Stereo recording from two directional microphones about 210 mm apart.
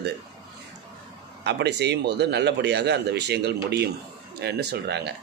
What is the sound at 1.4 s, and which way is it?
Speech, 55° right (ahead or behind).